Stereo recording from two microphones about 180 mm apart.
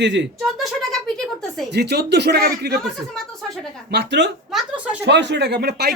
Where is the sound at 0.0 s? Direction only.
80° right.